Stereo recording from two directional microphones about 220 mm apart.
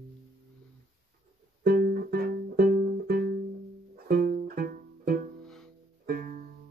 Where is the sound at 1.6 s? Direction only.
45° right (ahead or behind).